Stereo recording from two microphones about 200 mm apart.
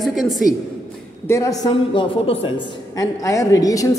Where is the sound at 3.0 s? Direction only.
15° left (ahead or behind).